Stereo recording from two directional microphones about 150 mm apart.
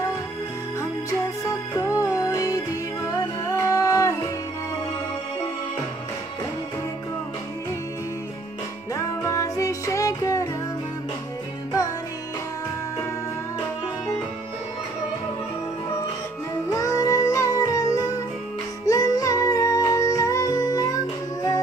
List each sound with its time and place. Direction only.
1.8 s music: 25° left (ahead or behind)
8.9 s music: 20° left (ahead or behind)
16.6 s music: 20° left (ahead or behind)